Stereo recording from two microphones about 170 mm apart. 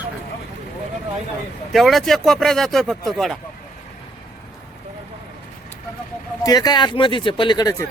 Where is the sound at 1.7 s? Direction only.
Centre (ahead or behind).